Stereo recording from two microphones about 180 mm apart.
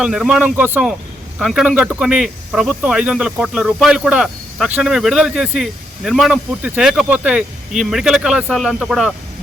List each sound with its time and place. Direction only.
0.0 s speech: 5° right (ahead or behind)